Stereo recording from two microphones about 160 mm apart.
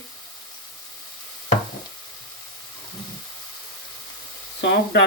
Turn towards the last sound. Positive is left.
turn(degrees=90)